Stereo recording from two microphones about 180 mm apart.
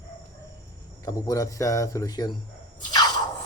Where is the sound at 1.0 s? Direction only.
20° left (ahead or behind).